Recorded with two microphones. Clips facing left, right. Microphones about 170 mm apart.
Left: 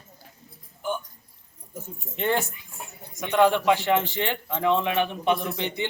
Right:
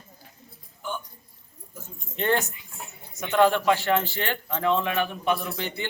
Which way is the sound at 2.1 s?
10° left (ahead or behind).